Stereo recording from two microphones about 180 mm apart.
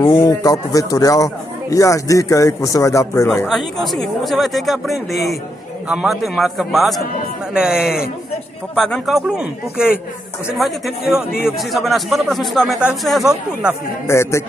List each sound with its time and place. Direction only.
0.1 s a man's voice: 15° left (ahead or behind)
3.8 s speech: centre (ahead or behind)
14.0 s a man's voice: 15° left (ahead or behind)